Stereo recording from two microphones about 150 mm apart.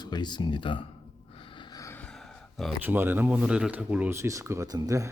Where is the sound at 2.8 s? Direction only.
15° right (ahead or behind).